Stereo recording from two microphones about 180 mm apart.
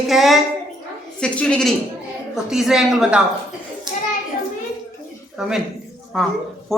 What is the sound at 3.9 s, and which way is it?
Children playing, 25° right (ahead or behind).